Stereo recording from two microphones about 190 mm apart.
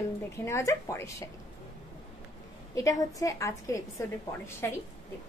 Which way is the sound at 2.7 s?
15° left (ahead or behind).